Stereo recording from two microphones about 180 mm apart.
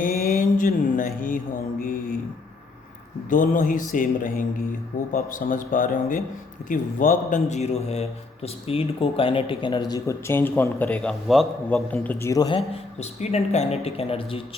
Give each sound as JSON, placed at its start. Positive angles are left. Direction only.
{"t": 0.0, "sound": "mantra", "side_deg": 55}
{"t": 1.8, "sound": "speech", "side_deg": 50}
{"t": 3.2, "sound": "a man's voice", "side_deg": 50}
{"t": 12.7, "sound": "speech", "side_deg": 35}